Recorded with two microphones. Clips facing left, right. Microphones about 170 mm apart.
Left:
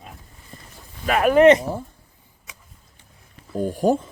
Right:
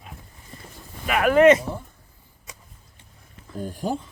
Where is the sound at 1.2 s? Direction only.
20° left (ahead or behind).